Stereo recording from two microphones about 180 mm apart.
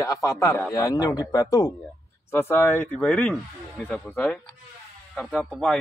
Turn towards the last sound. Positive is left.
turn(degrees=0)  # may be behind; listen again after turning